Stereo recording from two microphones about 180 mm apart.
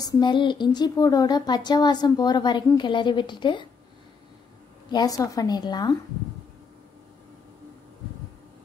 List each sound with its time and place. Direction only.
0.0 s speech: 25° left (ahead or behind)
4.9 s speech: 20° left (ahead or behind)